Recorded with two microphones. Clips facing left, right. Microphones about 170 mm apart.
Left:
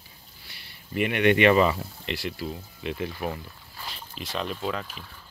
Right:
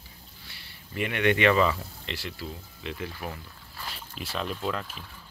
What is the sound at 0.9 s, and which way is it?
Speech, 20° left (ahead or behind).